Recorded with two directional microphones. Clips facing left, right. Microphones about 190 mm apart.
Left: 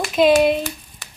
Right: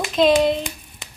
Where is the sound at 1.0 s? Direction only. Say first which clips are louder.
Right 2 dB; 20° right (ahead or behind).